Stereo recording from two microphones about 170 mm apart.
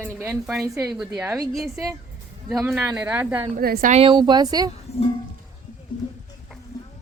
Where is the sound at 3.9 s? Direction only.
30° right (ahead or behind).